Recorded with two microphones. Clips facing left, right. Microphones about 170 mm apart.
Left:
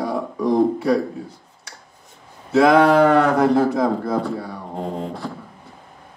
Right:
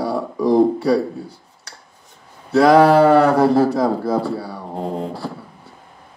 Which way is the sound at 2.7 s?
30° right (ahead or behind).